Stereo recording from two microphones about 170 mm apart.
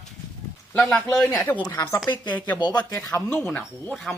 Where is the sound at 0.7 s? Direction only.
5° left (ahead or behind).